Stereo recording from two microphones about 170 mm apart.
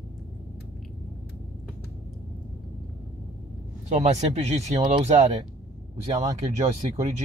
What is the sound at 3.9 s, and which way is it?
Speech, 45° right (ahead or behind).